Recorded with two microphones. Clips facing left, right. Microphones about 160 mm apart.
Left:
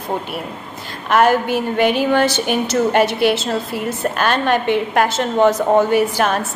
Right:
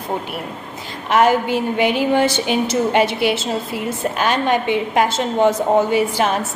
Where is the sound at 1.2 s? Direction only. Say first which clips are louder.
Even; 15° right (ahead or behind).